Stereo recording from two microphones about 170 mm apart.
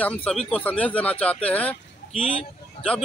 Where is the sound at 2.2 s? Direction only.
35° left (ahead or behind).